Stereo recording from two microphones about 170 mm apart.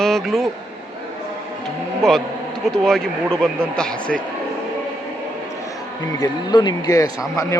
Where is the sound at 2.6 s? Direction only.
5° left (ahead or behind).